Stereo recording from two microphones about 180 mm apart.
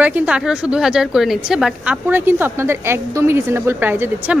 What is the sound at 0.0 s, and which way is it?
A woman's voice, 10° right (ahead or behind).